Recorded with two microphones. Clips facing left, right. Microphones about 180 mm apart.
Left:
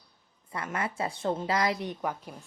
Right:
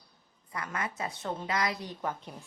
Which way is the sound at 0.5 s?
30° left (ahead or behind).